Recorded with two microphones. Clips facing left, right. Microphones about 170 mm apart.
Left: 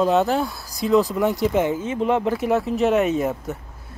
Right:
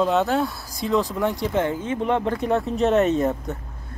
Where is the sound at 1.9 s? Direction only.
20° left (ahead or behind).